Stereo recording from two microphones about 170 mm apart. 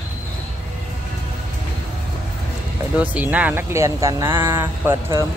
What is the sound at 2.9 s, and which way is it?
Speech, 10° right (ahead or behind).